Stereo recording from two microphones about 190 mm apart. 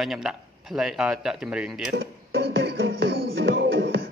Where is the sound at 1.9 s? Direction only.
55° right (ahead or behind).